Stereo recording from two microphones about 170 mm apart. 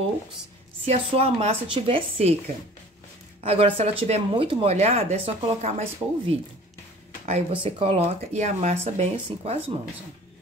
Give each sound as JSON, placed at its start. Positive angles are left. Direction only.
{"t": 0.8, "sound": "speech", "side_deg": -35}
{"t": 3.4, "sound": "speech", "side_deg": -35}